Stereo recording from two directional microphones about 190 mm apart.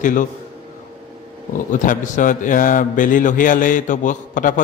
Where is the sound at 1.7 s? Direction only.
40° left (ahead or behind).